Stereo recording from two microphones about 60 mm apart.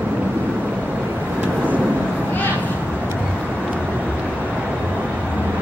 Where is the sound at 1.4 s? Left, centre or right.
Right.